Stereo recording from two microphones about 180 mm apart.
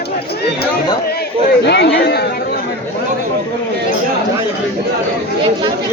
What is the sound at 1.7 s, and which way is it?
Speech, 70° left (ahead or behind).